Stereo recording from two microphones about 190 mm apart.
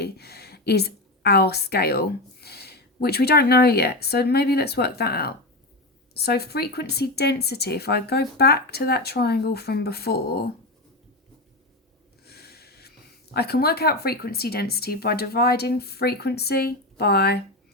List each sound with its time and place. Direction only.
0.0 s a woman's voice: 55° left (ahead or behind)
12.2 s snort: 55° left (ahead or behind)
13.3 s speech: 55° left (ahead or behind)